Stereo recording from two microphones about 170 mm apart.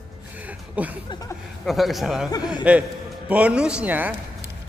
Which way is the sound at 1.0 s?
25° left (ahead or behind).